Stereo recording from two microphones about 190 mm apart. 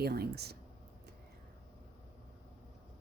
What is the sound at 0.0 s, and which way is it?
Speech, 55° right (ahead or behind).